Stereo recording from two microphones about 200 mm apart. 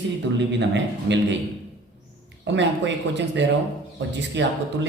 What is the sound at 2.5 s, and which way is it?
Speech, 60° right (ahead or behind).